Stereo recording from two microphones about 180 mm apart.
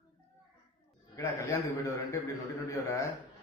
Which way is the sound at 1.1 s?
15° left (ahead or behind).